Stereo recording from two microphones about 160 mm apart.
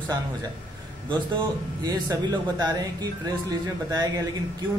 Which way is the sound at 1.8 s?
25° right (ahead or behind).